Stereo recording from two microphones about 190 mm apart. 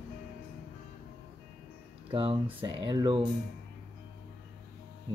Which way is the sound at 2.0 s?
30° right (ahead or behind).